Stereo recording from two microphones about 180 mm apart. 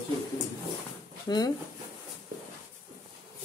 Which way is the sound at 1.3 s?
20° left (ahead or behind).